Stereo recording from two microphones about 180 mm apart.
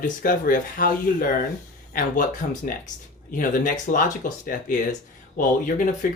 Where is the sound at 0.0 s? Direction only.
50° left (ahead or behind).